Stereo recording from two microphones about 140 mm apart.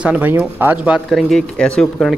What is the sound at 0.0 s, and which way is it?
Speech, 10° right (ahead or behind).